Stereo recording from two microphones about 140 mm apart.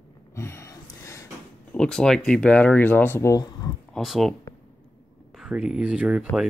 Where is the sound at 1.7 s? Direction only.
5° left (ahead or behind); by 3.7 s 25° left (ahead or behind).